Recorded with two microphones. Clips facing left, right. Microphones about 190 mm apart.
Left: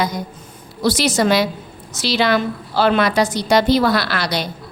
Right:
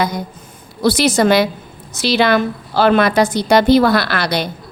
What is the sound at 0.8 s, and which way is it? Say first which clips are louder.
A woman's voice: right 3 dB; 55° right (ahead or behind).